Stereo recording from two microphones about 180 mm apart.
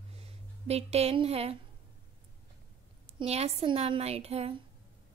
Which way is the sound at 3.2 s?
35° right (ahead or behind).